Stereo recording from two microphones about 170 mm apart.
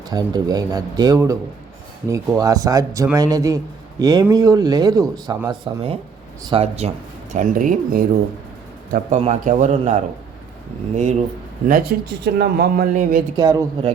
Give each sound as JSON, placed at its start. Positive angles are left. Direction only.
{"t": 0.1, "sound": "a man's voice", "side_deg": -25}
{"t": 7.3, "sound": "a man's voice", "side_deg": -50}
{"t": 8.9, "sound": "a man's voice", "side_deg": -45}
{"t": 11.7, "sound": "speech", "side_deg": -70}
{"t": 13.3, "sound": "a man's voice", "side_deg": -20}